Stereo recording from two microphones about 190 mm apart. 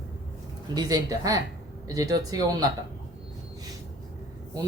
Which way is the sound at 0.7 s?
20° right (ahead or behind).